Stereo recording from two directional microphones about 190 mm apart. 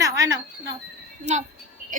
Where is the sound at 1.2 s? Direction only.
40° right (ahead or behind).